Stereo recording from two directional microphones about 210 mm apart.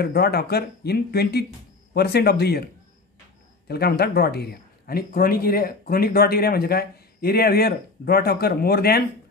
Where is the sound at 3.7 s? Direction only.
50° left (ahead or behind).